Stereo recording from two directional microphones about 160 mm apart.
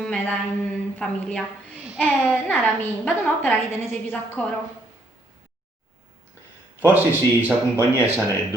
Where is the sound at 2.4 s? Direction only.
10° left (ahead or behind).